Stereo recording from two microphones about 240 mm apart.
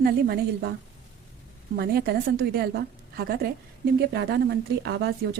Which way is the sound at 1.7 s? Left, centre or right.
Right.